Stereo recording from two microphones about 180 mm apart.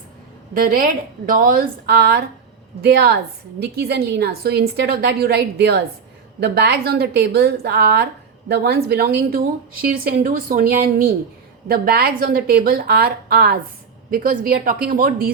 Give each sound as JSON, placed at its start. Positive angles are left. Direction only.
{"t": 0.5, "sound": "a woman's voice", "side_deg": -50}